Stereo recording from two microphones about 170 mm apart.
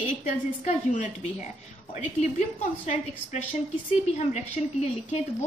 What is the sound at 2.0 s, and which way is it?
A woman's voice, 45° left (ahead or behind).